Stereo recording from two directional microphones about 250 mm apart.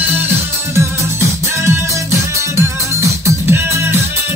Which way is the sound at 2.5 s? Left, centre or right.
Centre.